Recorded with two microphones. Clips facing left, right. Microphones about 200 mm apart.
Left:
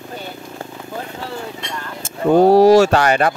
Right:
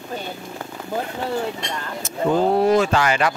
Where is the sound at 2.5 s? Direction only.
85° left.